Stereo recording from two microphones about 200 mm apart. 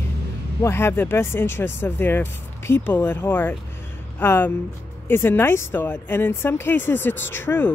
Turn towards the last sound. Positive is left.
turn(degrees=10)  # may be behind; listen again after turning